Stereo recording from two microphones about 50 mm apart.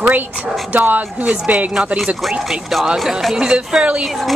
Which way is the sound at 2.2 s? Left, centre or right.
Centre.